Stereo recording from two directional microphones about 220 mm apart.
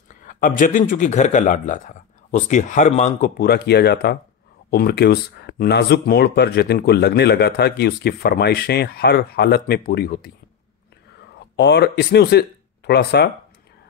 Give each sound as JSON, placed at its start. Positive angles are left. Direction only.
{"t": 0.2, "sound": "a man's voice", "side_deg": 35}
{"t": 11.3, "sound": "speech", "side_deg": 50}